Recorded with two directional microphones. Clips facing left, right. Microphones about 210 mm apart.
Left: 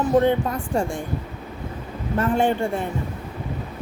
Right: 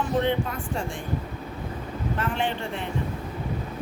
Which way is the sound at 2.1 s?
45° left (ahead or behind).